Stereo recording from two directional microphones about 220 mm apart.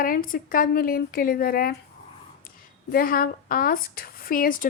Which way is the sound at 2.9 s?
40° left (ahead or behind).